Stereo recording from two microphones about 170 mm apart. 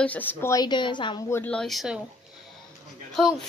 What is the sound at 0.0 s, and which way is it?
A woman's voice, 10° left (ahead or behind).